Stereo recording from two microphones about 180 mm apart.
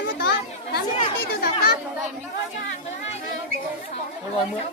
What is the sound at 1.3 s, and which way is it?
Speech, 60° left (ahead or behind).